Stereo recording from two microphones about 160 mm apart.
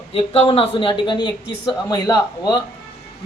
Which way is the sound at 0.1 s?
35° left (ahead or behind).